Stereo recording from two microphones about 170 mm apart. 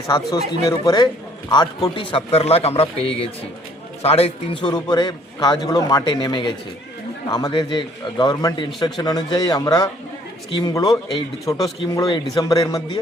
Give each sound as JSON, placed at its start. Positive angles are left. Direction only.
{"t": 0.1, "sound": "a man's voice", "side_deg": 20}